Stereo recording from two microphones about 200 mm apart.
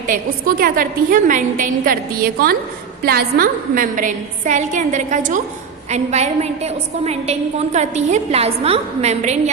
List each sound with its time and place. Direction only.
0.1 s a woman's voice: 45° right (ahead or behind)